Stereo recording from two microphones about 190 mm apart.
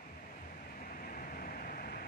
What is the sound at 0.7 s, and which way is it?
Vehicle, 45° left (ahead or behind).